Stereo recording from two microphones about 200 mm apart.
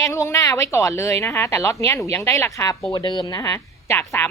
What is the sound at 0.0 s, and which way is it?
Speech, 15° left (ahead or behind).